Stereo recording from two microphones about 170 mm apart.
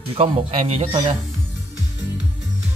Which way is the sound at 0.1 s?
35° right (ahead or behind).